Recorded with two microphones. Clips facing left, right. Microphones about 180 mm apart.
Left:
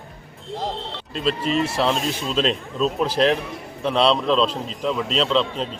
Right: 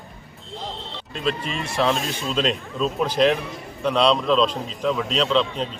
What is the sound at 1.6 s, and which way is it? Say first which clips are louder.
A man's voice: left 1 dB; 5° left (ahead or behind).